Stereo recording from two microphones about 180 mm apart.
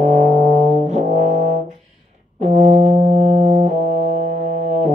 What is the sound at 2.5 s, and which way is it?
Brass instrument, 40° right (ahead or behind).